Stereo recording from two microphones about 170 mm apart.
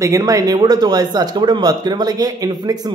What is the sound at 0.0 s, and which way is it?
Speech, 20° right (ahead or behind).